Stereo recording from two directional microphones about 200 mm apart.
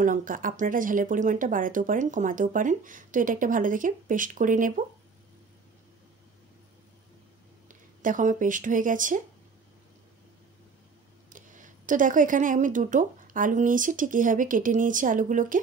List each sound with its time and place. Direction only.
0.0 s speech: 40° right (ahead or behind)
7.6 s speech: 40° right (ahead or behind)
11.2 s speech: 40° right (ahead or behind)